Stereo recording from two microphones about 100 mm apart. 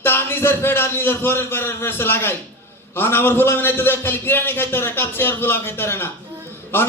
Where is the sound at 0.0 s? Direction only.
25° left (ahead or behind).